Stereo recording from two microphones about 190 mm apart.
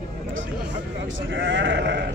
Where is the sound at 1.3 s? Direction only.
70° right (ahead or behind).